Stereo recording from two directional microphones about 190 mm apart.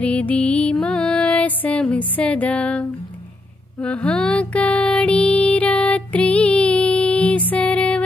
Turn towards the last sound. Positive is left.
turn(degrees=5)  # may be behind; listen again after turning